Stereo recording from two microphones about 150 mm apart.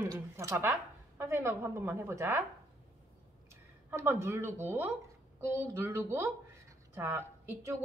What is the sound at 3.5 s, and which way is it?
A woman's voice, 15° right (ahead or behind).